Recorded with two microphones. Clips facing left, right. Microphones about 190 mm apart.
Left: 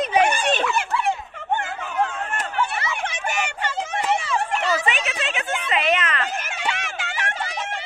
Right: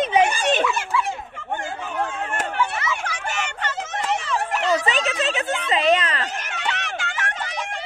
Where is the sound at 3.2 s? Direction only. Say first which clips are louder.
Left 2 dB; 10° left (ahead or behind).